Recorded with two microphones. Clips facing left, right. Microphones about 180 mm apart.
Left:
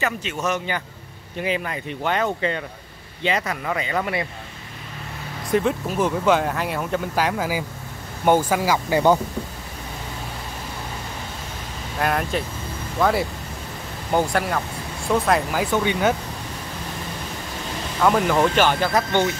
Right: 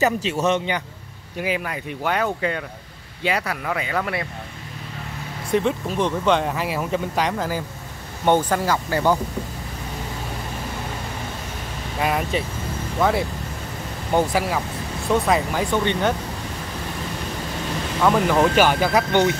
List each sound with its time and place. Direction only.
0.0 s speech: 35° right (ahead or behind)
1.4 s speech: 5° right (ahead or behind)
5.5 s speech: centre (ahead or behind); by 9.2 s 20° left (ahead or behind)
12.0 s speech: centre (ahead or behind)
18.0 s speech: centre (ahead or behind)